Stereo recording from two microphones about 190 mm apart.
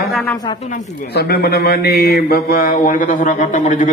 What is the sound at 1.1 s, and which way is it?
Mantra, 55° left (ahead or behind).